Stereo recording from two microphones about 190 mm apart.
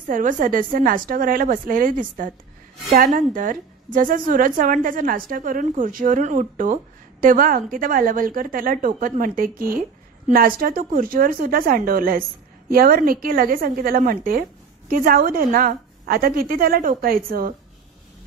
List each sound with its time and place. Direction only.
0.1 s a woman's voice: 45° right (ahead or behind)